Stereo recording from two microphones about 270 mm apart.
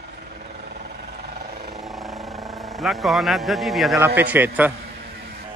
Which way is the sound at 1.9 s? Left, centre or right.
Centre.